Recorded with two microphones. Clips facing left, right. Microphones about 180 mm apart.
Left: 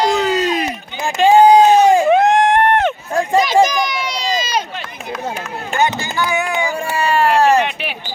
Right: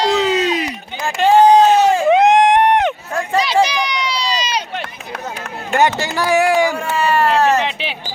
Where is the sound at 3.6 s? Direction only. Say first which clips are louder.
Left 2 dB; 45° left (ahead or behind).